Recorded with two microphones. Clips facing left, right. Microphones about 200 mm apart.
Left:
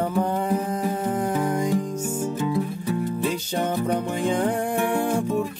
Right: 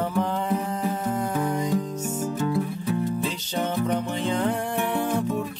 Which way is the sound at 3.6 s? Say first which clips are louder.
Even; 15° left (ahead or behind).